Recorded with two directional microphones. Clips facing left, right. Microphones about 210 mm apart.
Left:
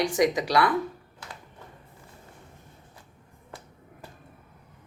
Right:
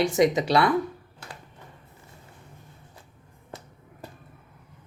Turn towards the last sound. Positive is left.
turn(degrees=-20)  # may be behind; listen again after turning